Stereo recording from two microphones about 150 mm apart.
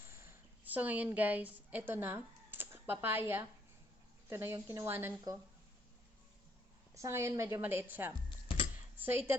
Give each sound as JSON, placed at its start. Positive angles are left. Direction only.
{"t": 0.1, "sound": "a woman's voice", "side_deg": -15}
{"t": 6.9, "sound": "a woman's voice", "side_deg": -20}